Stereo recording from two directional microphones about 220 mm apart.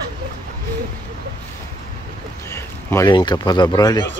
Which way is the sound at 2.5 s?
10° left (ahead or behind).